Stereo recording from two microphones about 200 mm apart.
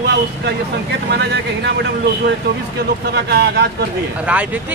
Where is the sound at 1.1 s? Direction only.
55° right (ahead or behind).